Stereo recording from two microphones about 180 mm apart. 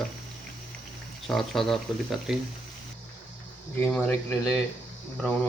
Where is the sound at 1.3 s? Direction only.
Centre (ahead or behind).